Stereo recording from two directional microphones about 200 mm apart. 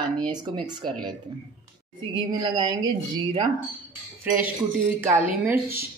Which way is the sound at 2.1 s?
25° right (ahead or behind).